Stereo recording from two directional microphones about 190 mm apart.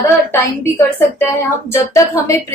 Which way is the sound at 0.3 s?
15° left (ahead or behind).